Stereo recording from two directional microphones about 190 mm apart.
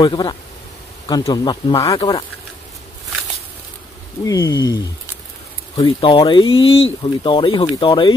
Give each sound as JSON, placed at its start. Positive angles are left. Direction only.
{"t": 0.0, "sound": "speech", "side_deg": 25}
{"t": 4.2, "sound": "speech", "side_deg": 20}
{"t": 5.9, "sound": "speech", "side_deg": 30}